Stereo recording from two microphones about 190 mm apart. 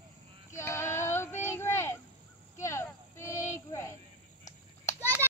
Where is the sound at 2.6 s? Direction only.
15° left (ahead or behind).